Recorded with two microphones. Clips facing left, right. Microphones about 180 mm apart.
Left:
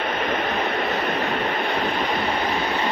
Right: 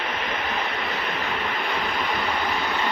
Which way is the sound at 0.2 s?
50° left (ahead or behind).